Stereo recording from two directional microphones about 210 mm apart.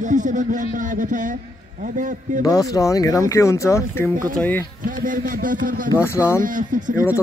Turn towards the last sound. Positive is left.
turn(degrees=-40)  # may be behind; listen again after turning